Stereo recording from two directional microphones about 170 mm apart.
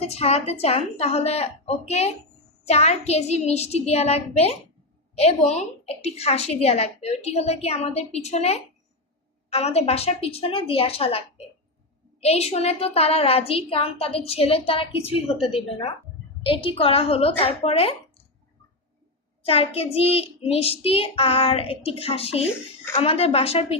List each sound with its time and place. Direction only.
0.0 s a woman's voice: 35° left (ahead or behind)
12.2 s a woman's voice: 40° left (ahead or behind)
16.4 s a woman's voice: 30° left (ahead or behind)
19.4 s a woman's voice: 35° left (ahead or behind)